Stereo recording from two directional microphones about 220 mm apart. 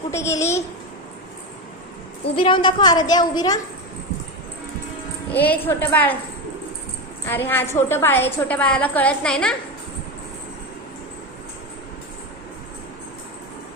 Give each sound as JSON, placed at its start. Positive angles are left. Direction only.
{"t": 0.1, "sound": "a woman's voice", "side_deg": 15}
{"t": 2.3, "sound": "a woman's voice", "side_deg": 20}
{"t": 5.3, "sound": "a woman's voice", "side_deg": 10}
{"t": 7.3, "sound": "a woman's voice", "side_deg": 10}